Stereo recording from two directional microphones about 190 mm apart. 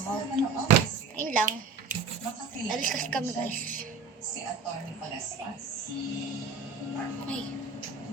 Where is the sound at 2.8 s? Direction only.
45° right (ahead or behind).